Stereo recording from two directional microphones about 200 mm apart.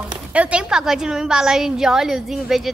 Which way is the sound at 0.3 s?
5° right (ahead or behind).